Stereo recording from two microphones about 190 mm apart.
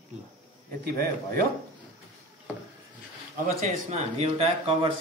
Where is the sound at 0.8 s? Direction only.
55° right (ahead or behind).